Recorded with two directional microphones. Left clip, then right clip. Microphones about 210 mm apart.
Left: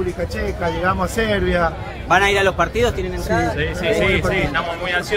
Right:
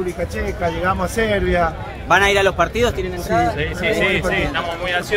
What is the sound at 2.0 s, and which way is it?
Speech, 20° right (ahead or behind).